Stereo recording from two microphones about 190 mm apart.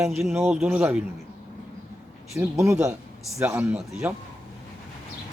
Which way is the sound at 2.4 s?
15° right (ahead or behind).